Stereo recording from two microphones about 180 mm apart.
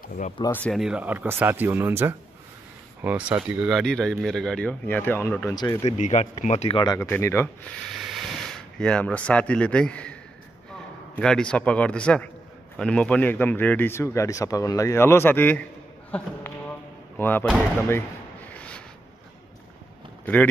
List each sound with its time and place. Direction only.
0.5 s a man's voice: 10° left (ahead or behind)
0.7 s speech: 5° right (ahead or behind); by 5.9 s 20° left (ahead or behind)
5.9 s speech: 40° left (ahead or behind)
7.0 s a man's voice: 15° left (ahead or behind)
7.9 s speech: centre (ahead or behind)
11.1 s a man's voice: 5° left (ahead or behind)
16.1 s a sound: 10° left (ahead or behind)
17.2 s a man's voice: 10° left (ahead or behind)
18.5 s a sound: 5° left (ahead or behind)